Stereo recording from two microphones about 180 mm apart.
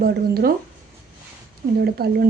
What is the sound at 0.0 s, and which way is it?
Speech, 55° right (ahead or behind).